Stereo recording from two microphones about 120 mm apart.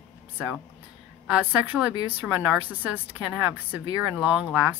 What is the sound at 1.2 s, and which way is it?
A woman's voice, 10° right (ahead or behind).